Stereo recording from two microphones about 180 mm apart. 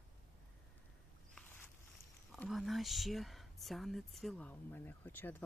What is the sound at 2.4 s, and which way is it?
Speech, centre (ahead or behind).